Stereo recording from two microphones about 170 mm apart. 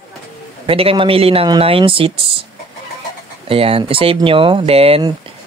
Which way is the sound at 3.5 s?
35° right (ahead or behind).